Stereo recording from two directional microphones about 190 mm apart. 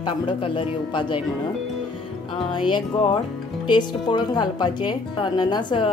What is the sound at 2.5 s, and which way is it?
Speech, 25° left (ahead or behind).